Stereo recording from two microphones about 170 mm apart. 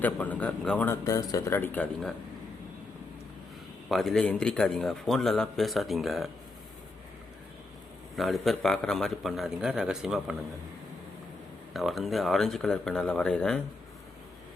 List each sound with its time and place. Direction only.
0.0 s speech: 10° left (ahead or behind)
1.0 s speech: 20° left (ahead or behind); by 2.1 s 5° left (ahead or behind)
3.8 s a man's voice: centre (ahead or behind)
8.1 s a man's voice: centre (ahead or behind)
11.7 s a man's voice: centre (ahead or behind)